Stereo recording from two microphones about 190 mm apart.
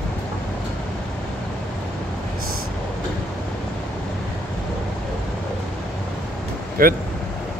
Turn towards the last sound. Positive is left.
turn(degrees=-50)  # may be behind; listen again after turning